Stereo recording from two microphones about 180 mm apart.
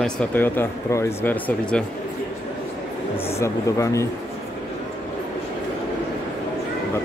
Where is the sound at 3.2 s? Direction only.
15° left (ahead or behind).